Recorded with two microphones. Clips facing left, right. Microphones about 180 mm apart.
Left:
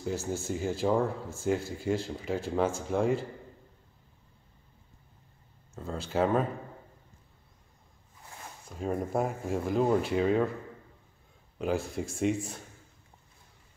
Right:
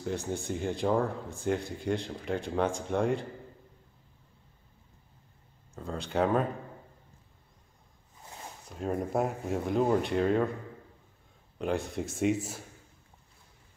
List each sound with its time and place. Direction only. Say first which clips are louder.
0.0 s speech: left 1 dB; 5° left (ahead or behind)
5.8 s speech: even; centre (ahead or behind)
8.6 s speech: even; centre (ahead or behind)
11.5 s speech: left 1 dB; centre (ahead or behind)